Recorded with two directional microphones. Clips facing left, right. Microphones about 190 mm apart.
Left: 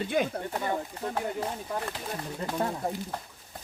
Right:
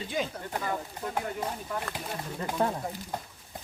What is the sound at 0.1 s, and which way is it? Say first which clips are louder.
Speech: left 4 dB; 55° left (ahead or behind).